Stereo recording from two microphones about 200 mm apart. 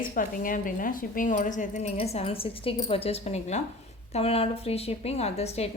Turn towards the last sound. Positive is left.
turn(degrees=30)  # may be behind; listen again after turning